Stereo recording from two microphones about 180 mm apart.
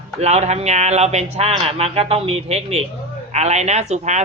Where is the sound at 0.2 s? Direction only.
40° right (ahead or behind).